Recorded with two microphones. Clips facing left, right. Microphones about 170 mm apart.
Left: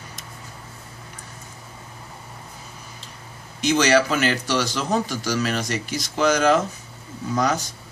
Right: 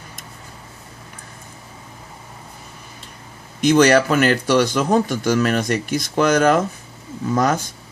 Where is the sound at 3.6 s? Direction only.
50° right (ahead or behind).